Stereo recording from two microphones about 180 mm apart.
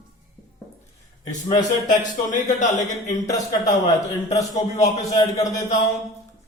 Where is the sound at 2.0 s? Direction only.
45° left (ahead or behind).